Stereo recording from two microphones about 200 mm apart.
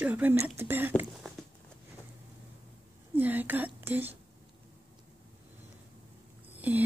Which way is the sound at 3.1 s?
10° right (ahead or behind).